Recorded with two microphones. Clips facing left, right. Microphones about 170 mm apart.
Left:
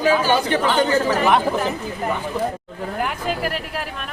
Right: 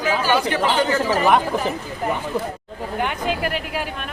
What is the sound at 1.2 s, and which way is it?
A woman's voice, centre (ahead or behind).